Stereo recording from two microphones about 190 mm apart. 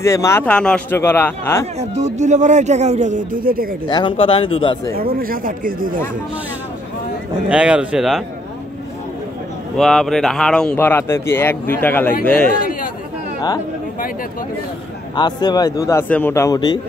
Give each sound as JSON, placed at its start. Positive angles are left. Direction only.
{"t": 0.0, "sound": "speech", "side_deg": 15}
{"t": 1.8, "sound": "speech", "side_deg": -35}
{"t": 3.9, "sound": "a man's voice", "side_deg": 25}
{"t": 4.9, "sound": "speech", "side_deg": -50}
{"t": 7.4, "sound": "speech", "side_deg": -5}
{"t": 9.8, "sound": "speech", "side_deg": 0}
{"t": 15.1, "sound": "a man's voice", "side_deg": 20}